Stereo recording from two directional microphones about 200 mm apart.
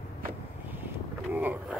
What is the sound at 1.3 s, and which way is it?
Vehicle, 5° right (ahead or behind).